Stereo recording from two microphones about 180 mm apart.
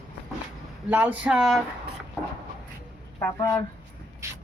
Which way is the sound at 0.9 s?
10° right (ahead or behind).